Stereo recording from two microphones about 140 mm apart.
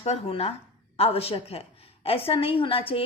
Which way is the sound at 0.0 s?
45° left (ahead or behind).